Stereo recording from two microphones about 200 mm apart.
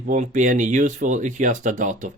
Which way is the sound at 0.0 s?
40° right (ahead or behind).